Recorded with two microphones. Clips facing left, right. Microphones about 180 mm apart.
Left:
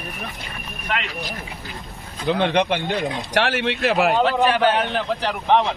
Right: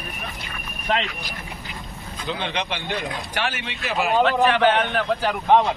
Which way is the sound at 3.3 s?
70° left (ahead or behind).